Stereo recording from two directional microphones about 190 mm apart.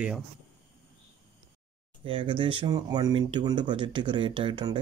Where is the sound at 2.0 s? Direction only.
30° right (ahead or behind).